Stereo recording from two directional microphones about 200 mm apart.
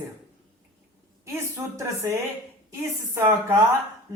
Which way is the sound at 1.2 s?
15° right (ahead or behind).